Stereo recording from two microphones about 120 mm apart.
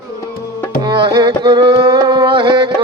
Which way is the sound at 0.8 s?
40° right (ahead or behind).